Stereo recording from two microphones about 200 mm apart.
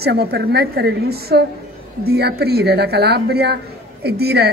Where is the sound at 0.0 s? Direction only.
50° right (ahead or behind).